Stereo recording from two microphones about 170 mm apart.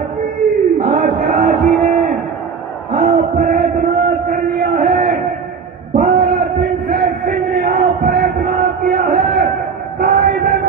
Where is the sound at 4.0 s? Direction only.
70° right (ahead or behind).